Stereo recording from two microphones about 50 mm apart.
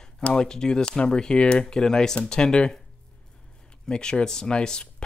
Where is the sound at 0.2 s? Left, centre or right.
Centre.